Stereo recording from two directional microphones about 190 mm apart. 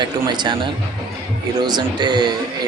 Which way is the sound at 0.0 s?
25° right (ahead or behind).